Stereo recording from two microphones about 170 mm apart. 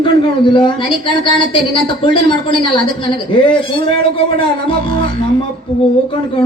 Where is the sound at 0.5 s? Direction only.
30° left (ahead or behind).